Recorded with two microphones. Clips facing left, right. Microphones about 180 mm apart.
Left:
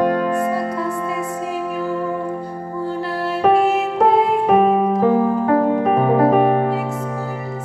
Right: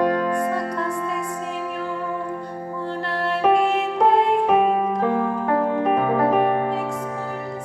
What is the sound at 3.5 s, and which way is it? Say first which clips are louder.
Music: left 3 dB; 40° left (ahead or behind).